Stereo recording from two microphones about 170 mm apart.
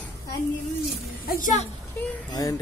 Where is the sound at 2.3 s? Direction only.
20° left (ahead or behind).